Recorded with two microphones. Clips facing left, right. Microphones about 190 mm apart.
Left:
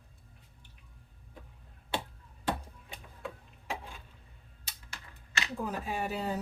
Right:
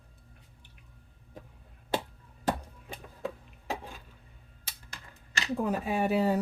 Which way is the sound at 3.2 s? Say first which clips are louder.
Right 6 dB; 40° right (ahead or behind).